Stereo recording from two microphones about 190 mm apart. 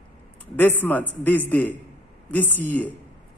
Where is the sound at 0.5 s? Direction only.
10° left (ahead or behind).